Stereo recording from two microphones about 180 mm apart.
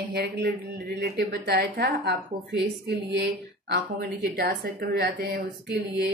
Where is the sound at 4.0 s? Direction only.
65° right (ahead or behind).